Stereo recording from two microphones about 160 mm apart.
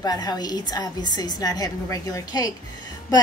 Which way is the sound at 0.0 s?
25° left (ahead or behind).